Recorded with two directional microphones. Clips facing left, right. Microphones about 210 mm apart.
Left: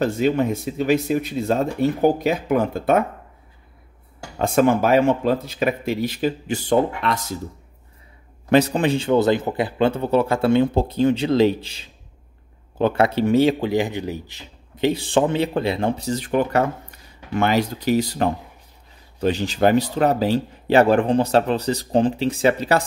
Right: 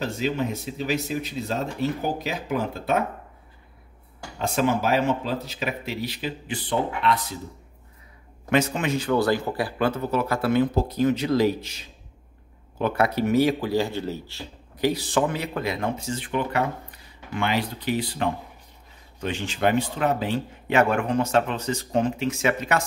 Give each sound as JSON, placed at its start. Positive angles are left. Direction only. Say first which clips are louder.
{"t": 0.0, "sound": "speech", "louder": "left 7 dB", "side_deg": 55}
{"t": 4.4, "sound": "speech", "louder": "left 6 dB", "side_deg": 55}
{"t": 8.5, "sound": "a man's voice", "louder": "left 6 dB", "side_deg": 35}